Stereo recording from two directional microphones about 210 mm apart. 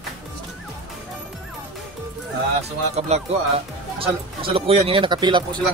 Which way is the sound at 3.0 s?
30° right (ahead or behind).